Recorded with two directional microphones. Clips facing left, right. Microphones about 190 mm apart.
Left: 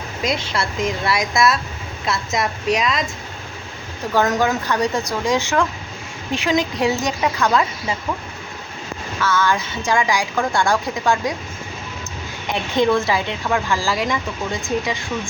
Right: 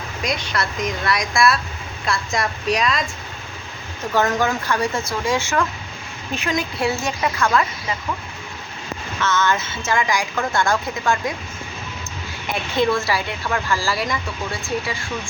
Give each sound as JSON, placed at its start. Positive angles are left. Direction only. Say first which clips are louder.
{"t": 0.2, "sound": "a woman's voice", "louder": "left 2 dB", "side_deg": 25}
{"t": 4.1, "sound": "speech", "louder": "left 2 dB", "side_deg": 15}
{"t": 7.3, "sound": "a woman's voice", "louder": "left 1 dB", "side_deg": 5}
{"t": 9.2, "sound": "speech", "louder": "left 1 dB", "side_deg": 10}
{"t": 12.5, "sound": "speech", "louder": "left 2 dB", "side_deg": 15}